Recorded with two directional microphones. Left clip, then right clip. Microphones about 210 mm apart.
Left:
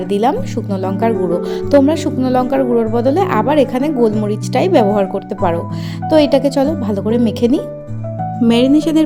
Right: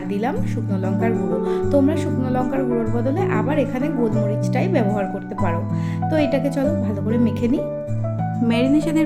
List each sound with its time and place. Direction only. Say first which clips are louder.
0.1 s speech: left 9 dB; 30° left (ahead or behind)